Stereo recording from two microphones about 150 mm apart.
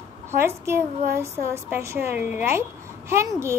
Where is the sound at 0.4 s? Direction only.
15° right (ahead or behind).